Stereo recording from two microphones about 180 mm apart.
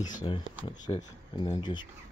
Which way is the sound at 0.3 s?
30° left (ahead or behind).